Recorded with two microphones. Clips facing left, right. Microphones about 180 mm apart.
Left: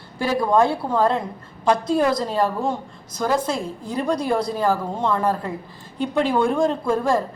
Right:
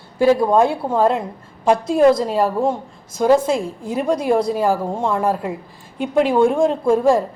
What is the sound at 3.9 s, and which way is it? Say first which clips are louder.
A woman's voice: right 4 dB; 5° right (ahead or behind).